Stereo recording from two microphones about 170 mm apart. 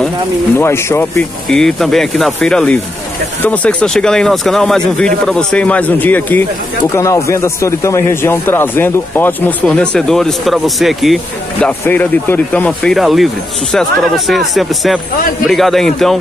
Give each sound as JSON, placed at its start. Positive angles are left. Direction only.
{"t": 0.6, "sound": "speech", "side_deg": 15}
{"t": 1.5, "sound": "speech", "side_deg": 5}
{"t": 11.6, "sound": "speech", "side_deg": 10}